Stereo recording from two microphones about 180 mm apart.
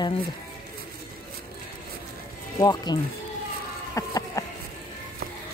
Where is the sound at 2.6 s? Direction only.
20° left (ahead or behind).